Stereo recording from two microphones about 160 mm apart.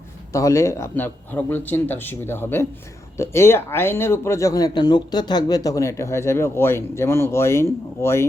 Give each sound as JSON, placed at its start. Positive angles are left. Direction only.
{"t": 0.3, "sound": "speech", "side_deg": 20}